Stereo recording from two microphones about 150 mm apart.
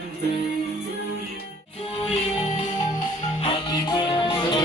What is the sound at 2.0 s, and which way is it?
Music, 40° left (ahead or behind).